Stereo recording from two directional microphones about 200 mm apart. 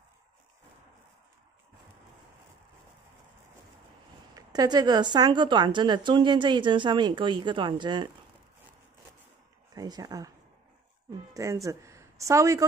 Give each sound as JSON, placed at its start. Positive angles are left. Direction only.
{"t": 4.4, "sound": "a woman's voice", "side_deg": -20}
{"t": 9.8, "sound": "a woman's voice", "side_deg": -20}
{"t": 11.3, "sound": "speech", "side_deg": -15}